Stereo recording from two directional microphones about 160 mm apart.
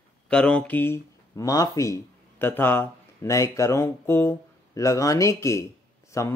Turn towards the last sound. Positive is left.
turn(degrees=20)  # may be behind; listen again after turning